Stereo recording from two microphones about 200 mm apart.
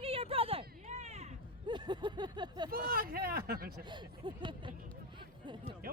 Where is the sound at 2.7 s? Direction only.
45° right (ahead or behind).